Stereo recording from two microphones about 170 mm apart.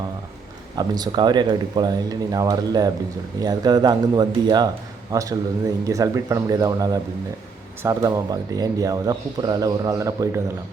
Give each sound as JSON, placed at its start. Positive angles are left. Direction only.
{"t": 0.8, "sound": "speech", "side_deg": -25}